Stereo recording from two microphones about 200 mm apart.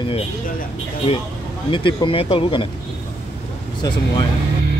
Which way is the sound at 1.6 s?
25° left (ahead or behind).